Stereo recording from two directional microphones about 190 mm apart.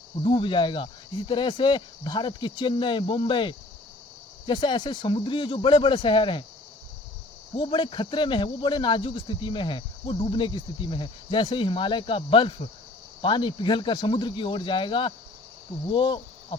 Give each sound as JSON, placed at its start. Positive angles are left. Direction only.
{"t": 0.3, "sound": "speech", "side_deg": 25}
{"t": 7.5, "sound": "speech", "side_deg": 25}
{"t": 15.9, "sound": "cricket", "side_deg": 25}